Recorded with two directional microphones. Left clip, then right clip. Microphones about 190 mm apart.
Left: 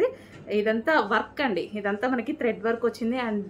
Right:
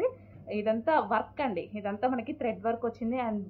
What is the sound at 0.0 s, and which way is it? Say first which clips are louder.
A woman's voice: left 5 dB; 30° left (ahead or behind).